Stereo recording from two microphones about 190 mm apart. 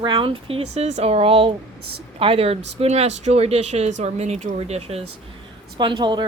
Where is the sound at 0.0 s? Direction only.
25° right (ahead or behind).